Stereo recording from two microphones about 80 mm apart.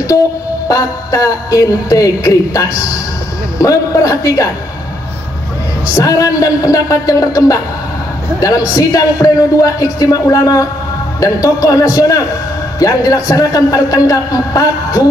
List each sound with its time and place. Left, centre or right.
0.7 s a man's voice: left
5.9 s a man's voice: left